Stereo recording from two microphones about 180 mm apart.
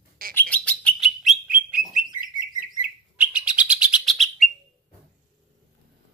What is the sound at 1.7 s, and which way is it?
Bird, 50° right (ahead or behind).